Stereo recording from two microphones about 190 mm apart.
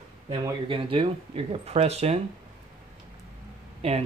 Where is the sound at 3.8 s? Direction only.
30° right (ahead or behind).